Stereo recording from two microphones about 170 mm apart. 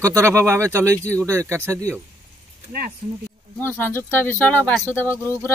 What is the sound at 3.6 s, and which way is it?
Speech, 10° left (ahead or behind).